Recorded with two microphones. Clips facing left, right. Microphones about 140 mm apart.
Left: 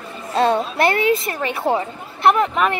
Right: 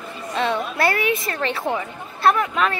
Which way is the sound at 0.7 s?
25° left (ahead or behind).